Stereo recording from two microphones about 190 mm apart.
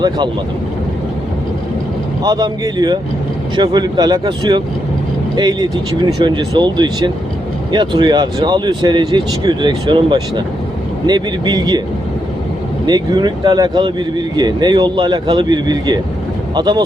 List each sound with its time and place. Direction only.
2.2 s speech: 20° right (ahead or behind)
12.8 s speech: 20° right (ahead or behind)